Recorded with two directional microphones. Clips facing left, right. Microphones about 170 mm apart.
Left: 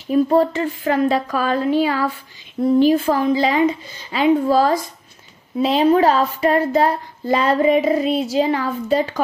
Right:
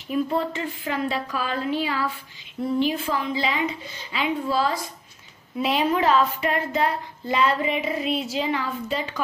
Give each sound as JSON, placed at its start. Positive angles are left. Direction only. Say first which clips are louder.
{"t": 0.1, "sound": "a woman's voice", "louder": "left 9 dB", "side_deg": 45}
{"t": 5.6, "sound": "a woman's voice", "louder": "left 8 dB", "side_deg": 30}